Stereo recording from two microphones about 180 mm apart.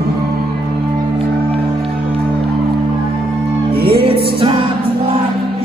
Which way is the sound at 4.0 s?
30° right (ahead or behind).